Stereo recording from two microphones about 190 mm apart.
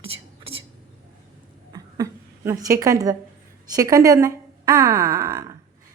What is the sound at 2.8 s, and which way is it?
A woman's voice, 15° right (ahead or behind).